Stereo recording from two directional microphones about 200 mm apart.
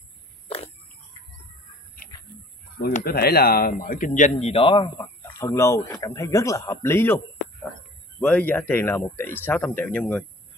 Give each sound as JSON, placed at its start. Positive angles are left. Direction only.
{"t": 2.0, "sound": "a sound", "side_deg": 45}
{"t": 2.8, "sound": "speech", "side_deg": 45}
{"t": 4.9, "sound": "speech", "side_deg": 15}
{"t": 8.2, "sound": "speech", "side_deg": 5}